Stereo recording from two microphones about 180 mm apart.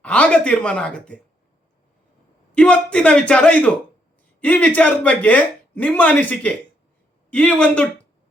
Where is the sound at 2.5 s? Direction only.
5° left (ahead or behind).